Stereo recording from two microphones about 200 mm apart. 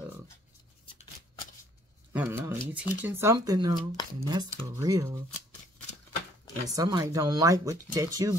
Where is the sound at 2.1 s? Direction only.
10° right (ahead or behind).